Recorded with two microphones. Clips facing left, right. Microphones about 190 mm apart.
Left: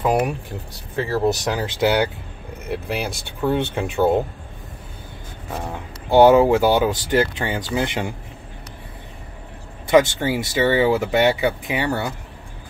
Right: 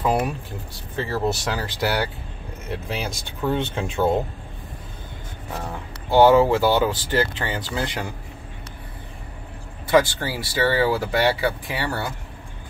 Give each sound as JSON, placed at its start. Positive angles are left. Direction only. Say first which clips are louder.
{"t": 0.0, "sound": "speech", "louder": "left 3 dB", "side_deg": 10}
{"t": 5.7, "sound": "speech", "louder": "left 3 dB", "side_deg": 15}
{"t": 9.8, "sound": "speech", "louder": "left 3 dB", "side_deg": 20}